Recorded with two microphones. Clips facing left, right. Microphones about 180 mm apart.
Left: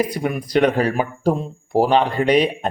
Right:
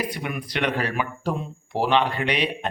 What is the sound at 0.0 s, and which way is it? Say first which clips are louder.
Speech: left 7 dB; 40° left (ahead or behind).